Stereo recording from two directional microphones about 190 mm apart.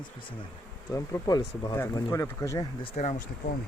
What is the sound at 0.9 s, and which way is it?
Speech, 15° left (ahead or behind).